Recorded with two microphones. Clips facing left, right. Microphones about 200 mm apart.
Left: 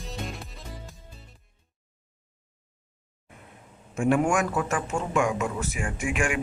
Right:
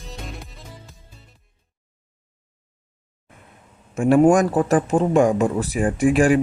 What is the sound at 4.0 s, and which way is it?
Speech, 35° right (ahead or behind).